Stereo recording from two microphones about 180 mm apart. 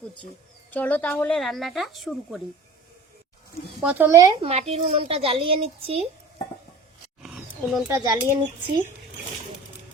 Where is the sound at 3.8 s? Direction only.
15° right (ahead or behind).